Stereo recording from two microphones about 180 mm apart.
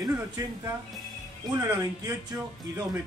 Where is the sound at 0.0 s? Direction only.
20° right (ahead or behind).